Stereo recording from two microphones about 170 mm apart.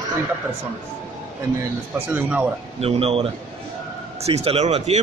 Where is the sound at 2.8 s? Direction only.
35° right (ahead or behind).